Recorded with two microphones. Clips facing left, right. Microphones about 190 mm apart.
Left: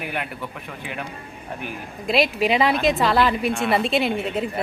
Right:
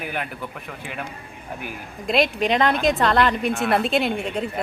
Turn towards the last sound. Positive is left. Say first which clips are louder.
# left 1 dB
turn(degrees=5)  # may be behind; listen again after turning